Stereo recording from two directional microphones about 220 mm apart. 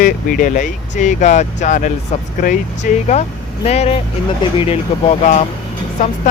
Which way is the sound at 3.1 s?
30° left (ahead or behind).